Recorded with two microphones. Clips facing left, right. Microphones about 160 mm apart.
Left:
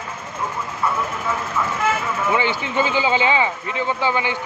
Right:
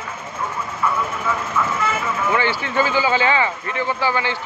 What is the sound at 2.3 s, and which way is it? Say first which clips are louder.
Speech: right 1 dB; 15° left (ahead or behind).